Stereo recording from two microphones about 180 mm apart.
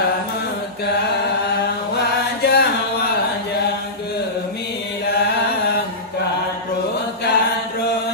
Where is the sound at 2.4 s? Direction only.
60° left (ahead or behind).